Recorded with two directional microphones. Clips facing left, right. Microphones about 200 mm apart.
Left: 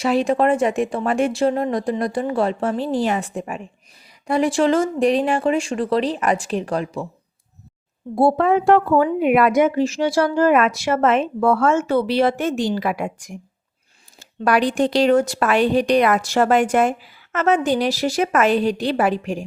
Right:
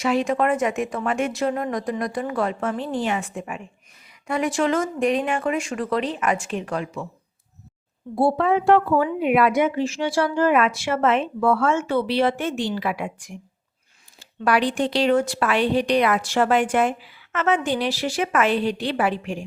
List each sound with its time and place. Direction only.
0.0 s speech: 35° left (ahead or behind)
8.1 s a woman's voice: 45° left (ahead or behind)